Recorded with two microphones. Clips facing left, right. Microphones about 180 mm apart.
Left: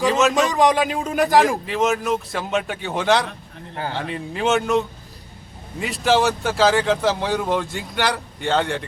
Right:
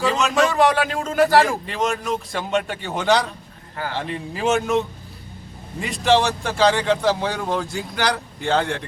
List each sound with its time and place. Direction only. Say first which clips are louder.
0.0 s a sound: left 3 dB; centre (ahead or behind)
0.3 s a man's voice: even; 15° left (ahead or behind)
1.6 s speech: left 3 dB; centre (ahead or behind)